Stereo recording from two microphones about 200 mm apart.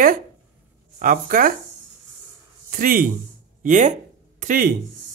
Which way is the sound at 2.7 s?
45° right (ahead or behind).